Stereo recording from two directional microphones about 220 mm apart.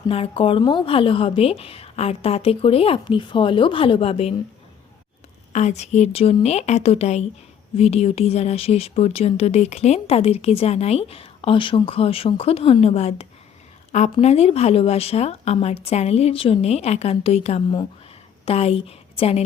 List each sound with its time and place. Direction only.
0.1 s speech: 25° left (ahead or behind)
5.5 s a woman's voice: 30° left (ahead or behind)